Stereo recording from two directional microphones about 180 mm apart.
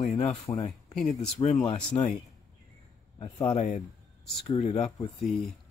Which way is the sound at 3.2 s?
20° left (ahead or behind).